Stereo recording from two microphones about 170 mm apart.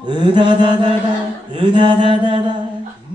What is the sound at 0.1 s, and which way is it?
Mantra, 30° right (ahead or behind).